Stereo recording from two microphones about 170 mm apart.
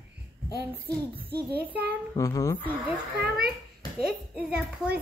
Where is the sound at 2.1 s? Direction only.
20° left (ahead or behind).